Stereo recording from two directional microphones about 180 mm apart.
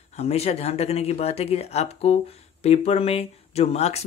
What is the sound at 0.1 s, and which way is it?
Speech, 35° left (ahead or behind).